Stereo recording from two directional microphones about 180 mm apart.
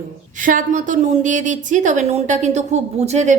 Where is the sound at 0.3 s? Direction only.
45° right (ahead or behind).